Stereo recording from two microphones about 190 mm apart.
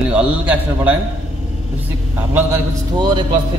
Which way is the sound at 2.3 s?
10° right (ahead or behind).